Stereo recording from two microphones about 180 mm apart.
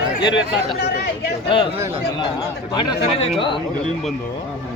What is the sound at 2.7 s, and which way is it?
Speech, 25° left (ahead or behind).